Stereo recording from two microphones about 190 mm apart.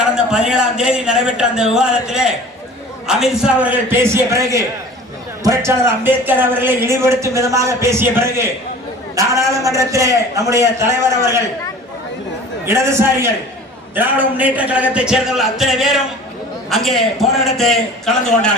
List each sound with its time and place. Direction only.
0.0 s a man's voice: 5° right (ahead or behind)
12.6 s a man's voice: 15° right (ahead or behind); by 18.5 s centre (ahead or behind)